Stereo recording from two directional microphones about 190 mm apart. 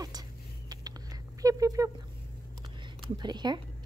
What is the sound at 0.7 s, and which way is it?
Patter, 20° right (ahead or behind).